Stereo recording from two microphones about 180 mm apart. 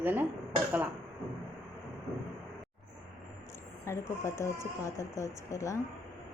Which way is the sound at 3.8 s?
15° left (ahead or behind).